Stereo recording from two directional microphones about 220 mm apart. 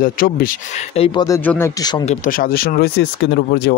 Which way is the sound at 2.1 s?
40° left (ahead or behind).